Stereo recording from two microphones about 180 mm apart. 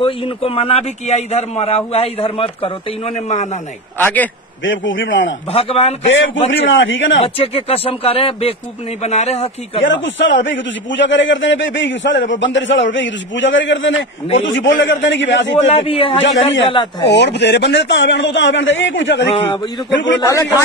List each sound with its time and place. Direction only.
0.0 s a man's voice: 30° left (ahead or behind)
4.0 s a man's voice: 10° left (ahead or behind)
4.6 s a man's voice: 90° left
5.5 s a man's voice: 30° left (ahead or behind)
6.0 s a man's voice: 90° left
7.3 s a man's voice: 35° left (ahead or behind)
9.8 s a man's voice: 90° left
15.5 s a man's voice: 30° left (ahead or behind)
16.2 s a man's voice: 90° left
17.1 s a man's voice: 70° left (ahead or behind); by 20.2 s 90° left
20.2 s a man's voice: 15° left (ahead or behind)